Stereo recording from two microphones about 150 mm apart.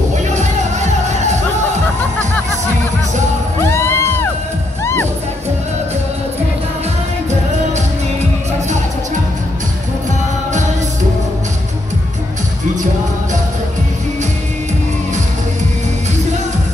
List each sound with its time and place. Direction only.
0.3 s music: 50° right (ahead or behind)
3.6 s music: 15° left (ahead or behind)